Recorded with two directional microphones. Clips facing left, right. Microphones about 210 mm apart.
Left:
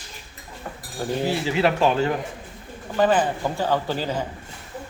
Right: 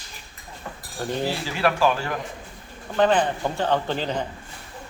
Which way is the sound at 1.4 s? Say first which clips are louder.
Left 1 dB; 20° left (ahead or behind).